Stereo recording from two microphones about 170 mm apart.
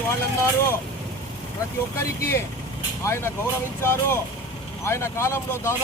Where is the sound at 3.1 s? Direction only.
15° left (ahead or behind).